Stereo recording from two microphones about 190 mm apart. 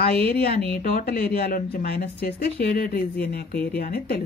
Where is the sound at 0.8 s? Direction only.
55° left (ahead or behind).